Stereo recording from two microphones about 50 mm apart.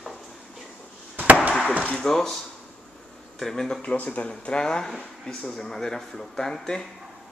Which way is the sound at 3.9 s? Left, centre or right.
Left.